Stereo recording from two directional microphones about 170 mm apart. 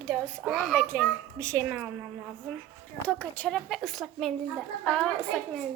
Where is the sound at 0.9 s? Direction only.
10° left (ahead or behind).